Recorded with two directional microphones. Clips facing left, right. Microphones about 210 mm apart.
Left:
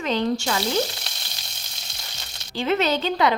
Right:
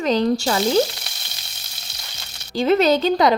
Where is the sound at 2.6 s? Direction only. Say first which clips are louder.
Right 6 dB; 40° right (ahead or behind).